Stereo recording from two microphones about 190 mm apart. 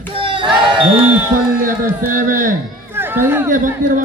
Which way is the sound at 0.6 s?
25° right (ahead or behind).